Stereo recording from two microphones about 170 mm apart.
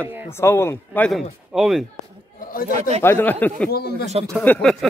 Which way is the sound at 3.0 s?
10° left (ahead or behind).